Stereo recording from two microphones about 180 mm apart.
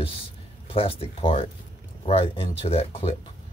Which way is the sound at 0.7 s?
30° left (ahead or behind).